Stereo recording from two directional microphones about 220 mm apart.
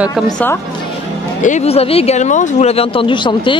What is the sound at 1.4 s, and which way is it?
Speech, 30° left (ahead or behind).